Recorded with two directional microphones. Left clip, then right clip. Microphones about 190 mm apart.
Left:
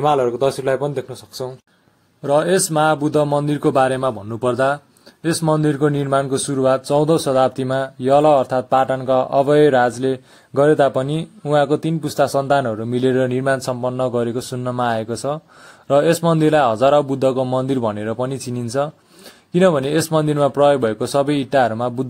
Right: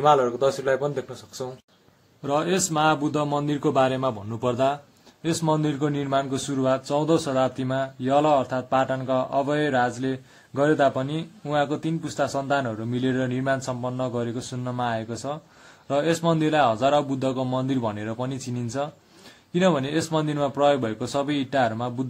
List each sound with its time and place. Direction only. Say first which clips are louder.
0.0 s a man's voice: left 3 dB; 35° left (ahead or behind)